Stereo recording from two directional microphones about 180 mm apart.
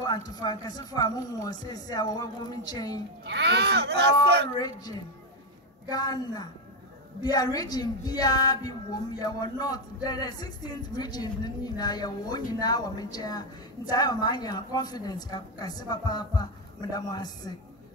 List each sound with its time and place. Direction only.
0.0 s a woman's voice: 20° left (ahead or behind)
3.3 s speech: 70° right (ahead or behind)
4.6 s a woman's voice: 20° left (ahead or behind)